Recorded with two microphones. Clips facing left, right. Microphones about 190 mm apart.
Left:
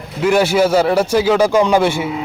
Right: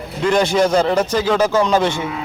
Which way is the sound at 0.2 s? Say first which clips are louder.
Left 2 dB; 5° left (ahead or behind).